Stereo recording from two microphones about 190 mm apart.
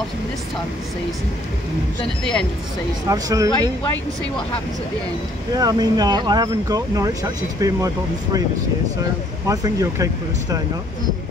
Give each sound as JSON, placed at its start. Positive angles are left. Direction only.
{"t": 3.1, "sound": "speech", "side_deg": -20}
{"t": 5.5, "sound": "speech", "side_deg": -20}
{"t": 9.5, "sound": "speech", "side_deg": -20}